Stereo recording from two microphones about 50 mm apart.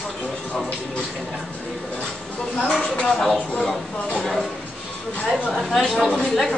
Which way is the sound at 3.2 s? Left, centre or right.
Centre.